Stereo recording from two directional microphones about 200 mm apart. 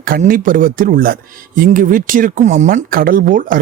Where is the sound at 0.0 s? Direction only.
45° right (ahead or behind).